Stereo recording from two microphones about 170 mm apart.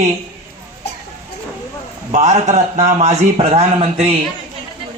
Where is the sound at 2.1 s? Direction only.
45° right (ahead or behind).